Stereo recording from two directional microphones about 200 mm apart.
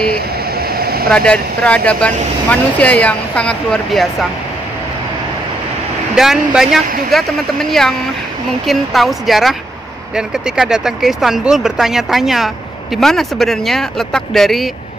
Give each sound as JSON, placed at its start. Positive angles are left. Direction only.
{"t": 0.6, "sound": "a sound", "side_deg": -50}
{"t": 1.1, "sound": "speech", "side_deg": 5}
{"t": 6.1, "sound": "speech", "side_deg": 0}